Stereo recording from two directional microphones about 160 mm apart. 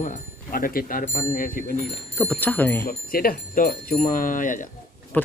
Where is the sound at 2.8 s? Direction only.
65° left (ahead or behind).